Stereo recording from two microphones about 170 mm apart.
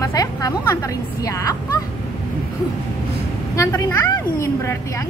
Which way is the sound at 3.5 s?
20° left (ahead or behind).